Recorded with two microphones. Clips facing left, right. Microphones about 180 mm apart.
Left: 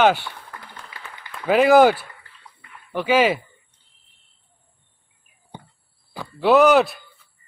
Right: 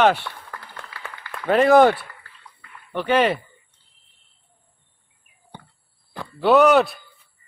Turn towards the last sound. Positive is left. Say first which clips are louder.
# even
turn(degrees=0)  # may be behind; listen again after turning